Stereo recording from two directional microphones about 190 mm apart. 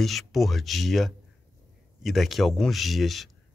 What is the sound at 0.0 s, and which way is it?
Speech, centre (ahead or behind).